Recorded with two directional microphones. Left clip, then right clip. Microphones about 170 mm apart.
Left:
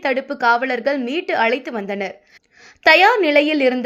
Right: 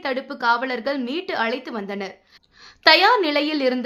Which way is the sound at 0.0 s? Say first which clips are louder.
Left 5 dB; 20° left (ahead or behind).